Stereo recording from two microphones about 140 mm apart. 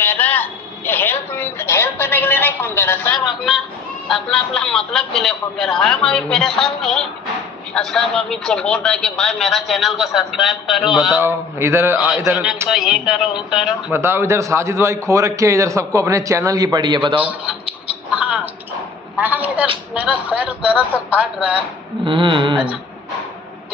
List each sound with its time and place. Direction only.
0.0 s a sound: 15° left (ahead or behind)
3.3 s a man's voice: centre (ahead or behind)
11.1 s a man's voice: 20° right (ahead or behind)
12.6 s a man's voice: 5° right (ahead or behind)
13.9 s a man's voice: 15° right (ahead or behind); by 17.2 s 35° right (ahead or behind)
17.2 s a man's voice: 10° right (ahead or behind)
18.1 s tick-tock: 10° right (ahead or behind)
19.1 s a man's voice: 10° right (ahead or behind)
22.0 s a sound: 35° right (ahead or behind)